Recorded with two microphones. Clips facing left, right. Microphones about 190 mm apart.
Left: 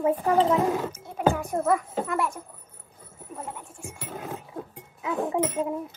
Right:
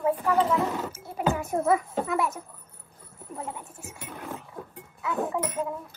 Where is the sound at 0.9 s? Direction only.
5° right (ahead or behind).